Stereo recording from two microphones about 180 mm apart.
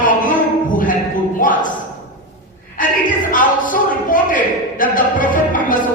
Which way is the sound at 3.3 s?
45° left (ahead or behind).